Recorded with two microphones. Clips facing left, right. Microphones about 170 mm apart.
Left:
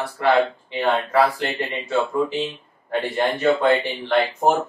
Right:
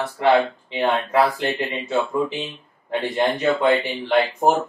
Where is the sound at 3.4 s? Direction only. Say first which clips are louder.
Left 3 dB; 10° right (ahead or behind).